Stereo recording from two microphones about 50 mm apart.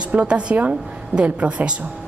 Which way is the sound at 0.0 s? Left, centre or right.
Right.